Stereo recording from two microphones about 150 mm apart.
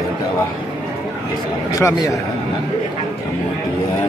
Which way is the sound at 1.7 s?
20° left (ahead or behind).